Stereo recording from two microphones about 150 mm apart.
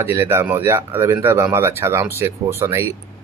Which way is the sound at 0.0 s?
15° right (ahead or behind).